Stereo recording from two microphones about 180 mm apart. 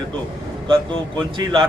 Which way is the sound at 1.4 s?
25° right (ahead or behind).